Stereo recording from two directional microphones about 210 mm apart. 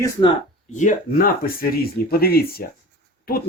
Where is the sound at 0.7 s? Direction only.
40° left (ahead or behind).